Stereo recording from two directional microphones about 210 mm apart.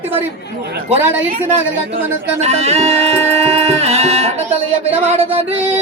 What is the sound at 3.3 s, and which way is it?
Music, 30° right (ahead or behind).